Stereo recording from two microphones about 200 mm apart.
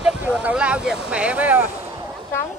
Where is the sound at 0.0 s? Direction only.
5° right (ahead or behind).